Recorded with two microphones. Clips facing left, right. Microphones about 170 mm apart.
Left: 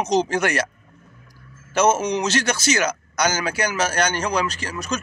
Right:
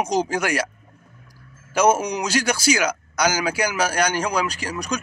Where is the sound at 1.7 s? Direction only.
10° right (ahead or behind).